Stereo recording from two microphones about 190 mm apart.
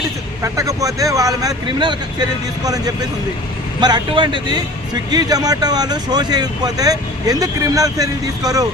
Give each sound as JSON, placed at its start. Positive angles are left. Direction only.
{"t": 0.4, "sound": "speech", "side_deg": -15}